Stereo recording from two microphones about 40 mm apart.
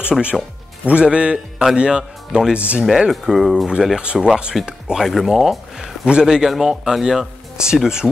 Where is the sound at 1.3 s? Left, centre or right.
Centre.